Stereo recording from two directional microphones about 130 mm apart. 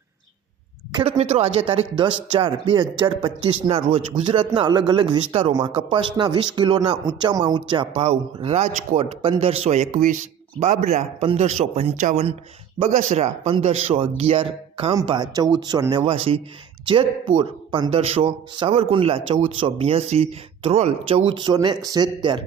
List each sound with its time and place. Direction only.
1.2 s speech: 55° right (ahead or behind)
12.9 s speech: 65° right (ahead or behind); by 14.9 s 50° right (ahead or behind)
15.0 s speech: 35° right (ahead or behind)
16.1 s speech: 50° right (ahead or behind)
16.8 s speech: 40° right (ahead or behind)